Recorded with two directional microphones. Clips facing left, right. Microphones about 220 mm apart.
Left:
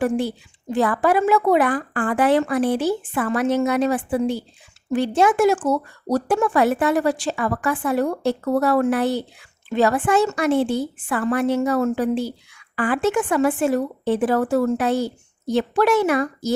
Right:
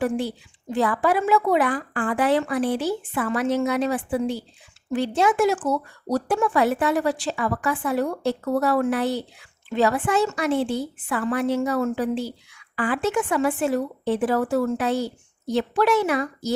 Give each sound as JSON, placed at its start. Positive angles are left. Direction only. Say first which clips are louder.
{"t": 0.7, "sound": "speech", "louder": "left 3 dB", "side_deg": 50}